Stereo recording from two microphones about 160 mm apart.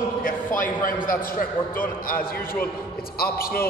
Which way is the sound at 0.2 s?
55° left (ahead or behind).